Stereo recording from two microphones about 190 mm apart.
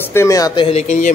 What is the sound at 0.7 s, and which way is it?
Speech, 35° left (ahead or behind).